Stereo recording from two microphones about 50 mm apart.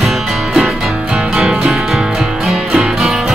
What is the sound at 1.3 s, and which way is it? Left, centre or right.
Music, centre.